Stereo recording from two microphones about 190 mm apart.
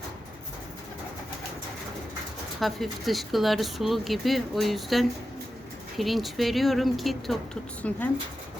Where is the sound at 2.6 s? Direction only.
Centre (ahead or behind).